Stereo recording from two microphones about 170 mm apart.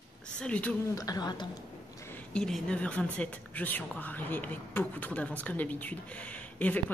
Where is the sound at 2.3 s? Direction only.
5° left (ahead or behind).